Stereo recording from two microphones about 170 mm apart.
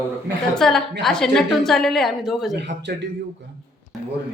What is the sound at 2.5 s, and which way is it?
Speech, 90° right.